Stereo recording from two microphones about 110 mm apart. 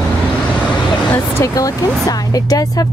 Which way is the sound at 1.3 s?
30° left (ahead or behind).